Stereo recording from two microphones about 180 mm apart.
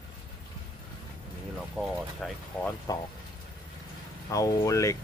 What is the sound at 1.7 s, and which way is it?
Speech, 5° left (ahead or behind).